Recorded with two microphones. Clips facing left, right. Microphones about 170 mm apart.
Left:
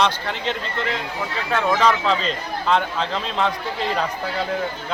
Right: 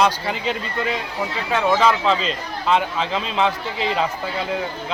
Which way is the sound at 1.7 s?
5° right (ahead or behind).